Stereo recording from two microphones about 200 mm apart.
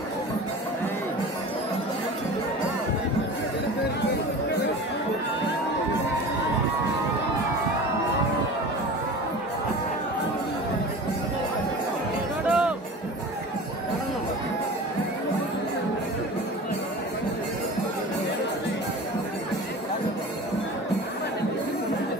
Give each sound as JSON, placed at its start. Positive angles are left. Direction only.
{"t": 12.4, "sound": "music", "side_deg": -5}